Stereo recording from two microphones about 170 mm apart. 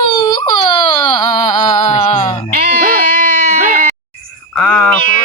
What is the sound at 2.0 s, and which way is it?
Music, 25° left (ahead or behind).